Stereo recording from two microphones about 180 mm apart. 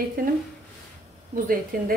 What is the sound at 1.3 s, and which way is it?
Speech, 50° right (ahead or behind).